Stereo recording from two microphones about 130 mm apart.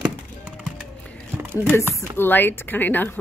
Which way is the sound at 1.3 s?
15° right (ahead or behind).